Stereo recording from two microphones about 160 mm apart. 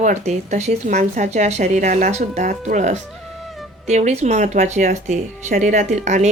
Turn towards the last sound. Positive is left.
turn(degrees=-45)  # may be behind; listen again after turning